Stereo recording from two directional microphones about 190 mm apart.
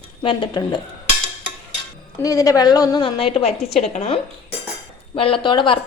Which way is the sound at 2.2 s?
20° left (ahead or behind).